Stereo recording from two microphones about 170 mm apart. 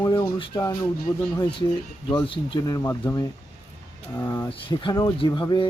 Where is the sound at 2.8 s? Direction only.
20° left (ahead or behind).